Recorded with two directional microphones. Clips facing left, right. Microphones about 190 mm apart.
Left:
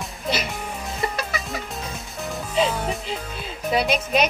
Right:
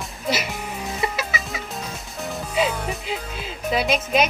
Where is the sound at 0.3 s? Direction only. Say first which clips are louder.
Right 1 dB; 5° right (ahead or behind).